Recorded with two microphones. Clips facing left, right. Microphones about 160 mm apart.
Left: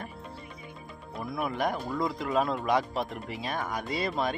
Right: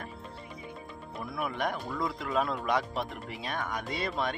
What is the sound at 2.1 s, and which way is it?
Speech, centre (ahead or behind).